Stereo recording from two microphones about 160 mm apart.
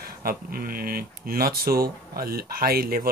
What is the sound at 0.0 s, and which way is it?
Speech, 65° right (ahead or behind).